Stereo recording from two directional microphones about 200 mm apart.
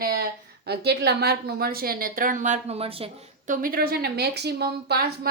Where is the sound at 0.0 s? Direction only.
50° right (ahead or behind); by 3.5 s 30° right (ahead or behind).